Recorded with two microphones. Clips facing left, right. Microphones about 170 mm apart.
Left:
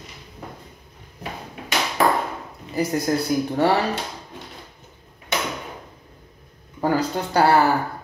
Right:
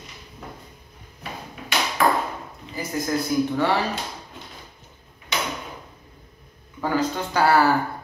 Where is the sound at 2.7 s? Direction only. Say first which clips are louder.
Left 4 dB; 35° left (ahead or behind).